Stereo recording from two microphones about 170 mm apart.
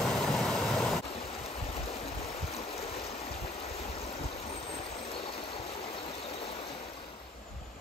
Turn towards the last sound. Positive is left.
turn(degrees=35)  # may be behind; listen again after turning